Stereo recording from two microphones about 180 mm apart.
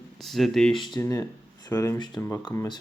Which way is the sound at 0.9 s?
20° left (ahead or behind).